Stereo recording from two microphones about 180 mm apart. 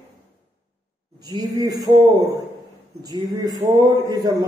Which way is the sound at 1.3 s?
20° right (ahead or behind).